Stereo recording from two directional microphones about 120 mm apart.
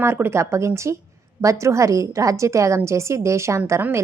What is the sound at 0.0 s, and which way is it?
A woman's voice, 20° right (ahead or behind).